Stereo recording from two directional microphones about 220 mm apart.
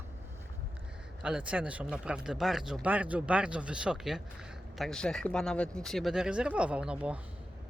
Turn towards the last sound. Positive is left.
turn(degrees=-5)  # may be behind; listen again after turning